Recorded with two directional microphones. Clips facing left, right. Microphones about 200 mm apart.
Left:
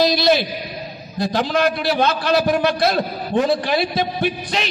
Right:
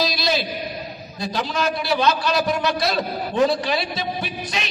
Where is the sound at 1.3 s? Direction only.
60° left (ahead or behind).